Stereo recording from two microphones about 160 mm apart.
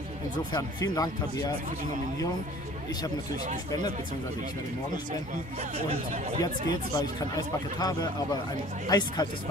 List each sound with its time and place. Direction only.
0.5 s a man's voice: 25° left (ahead or behind)
7.0 s a man's voice: 25° left (ahead or behind)